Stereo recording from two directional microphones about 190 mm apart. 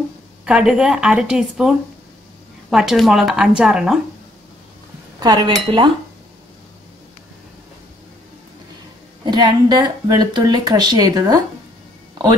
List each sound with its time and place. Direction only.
0.5 s a woman's voice: 5° right (ahead or behind)
2.7 s a woman's voice: centre (ahead or behind)
5.2 s speech: 20° right (ahead or behind)
9.2 s speech: 20° right (ahead or behind)